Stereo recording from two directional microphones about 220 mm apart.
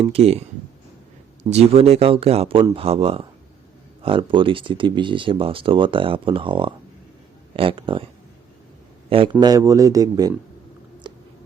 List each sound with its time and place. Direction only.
0.0 s speech: 30° right (ahead or behind)
1.5 s a man's voice: 30° right (ahead or behind)
11.1 s a sound: 20° right (ahead or behind)